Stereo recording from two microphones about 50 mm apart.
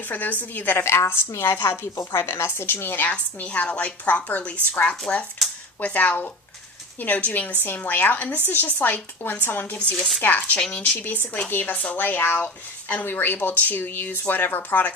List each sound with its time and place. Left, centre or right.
0.0 s speech: left
0.9 s a woman's voice: left
1.5 s a woman's voice: left
3.0 s a woman's voice: left
9.7 s a woman's voice: left
10.2 s speech: left
13.1 s speech: left